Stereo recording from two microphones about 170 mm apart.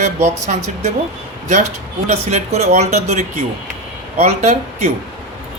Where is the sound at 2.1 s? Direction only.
40° right (ahead or behind).